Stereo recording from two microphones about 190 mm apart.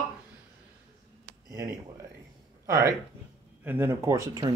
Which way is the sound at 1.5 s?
15° right (ahead or behind).